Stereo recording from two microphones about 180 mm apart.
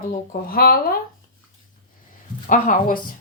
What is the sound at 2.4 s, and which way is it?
Speech, 50° left (ahead or behind).